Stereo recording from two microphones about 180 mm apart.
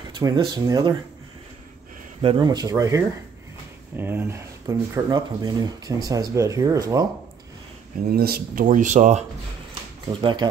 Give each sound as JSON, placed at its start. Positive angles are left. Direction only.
{"t": 0.2, "sound": "speech", "side_deg": -20}
{"t": 2.2, "sound": "speech", "side_deg": -25}
{"t": 8.1, "sound": "speech", "side_deg": -55}
{"t": 10.2, "sound": "speech", "side_deg": -25}